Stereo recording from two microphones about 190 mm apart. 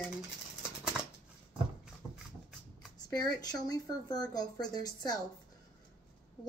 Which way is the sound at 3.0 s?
20° left (ahead or behind).